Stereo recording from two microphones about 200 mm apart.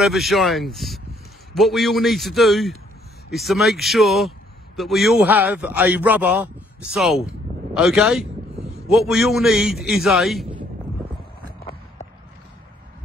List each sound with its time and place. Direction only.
0.0 s a man's voice: centre (ahead or behind)